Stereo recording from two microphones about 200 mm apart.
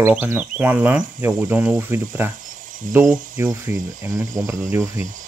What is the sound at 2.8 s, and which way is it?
Speech, 40° right (ahead or behind).